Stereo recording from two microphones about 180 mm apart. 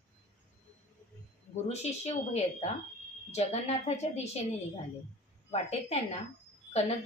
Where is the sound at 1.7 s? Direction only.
35° left (ahead or behind).